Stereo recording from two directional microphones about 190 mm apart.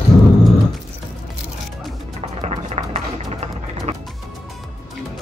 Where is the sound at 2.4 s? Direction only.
35° right (ahead or behind).